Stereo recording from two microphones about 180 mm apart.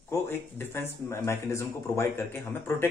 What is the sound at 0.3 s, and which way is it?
Speech, 15° left (ahead or behind).